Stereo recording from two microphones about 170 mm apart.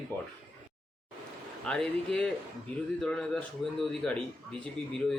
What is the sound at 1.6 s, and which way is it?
Speech, 5° left (ahead or behind).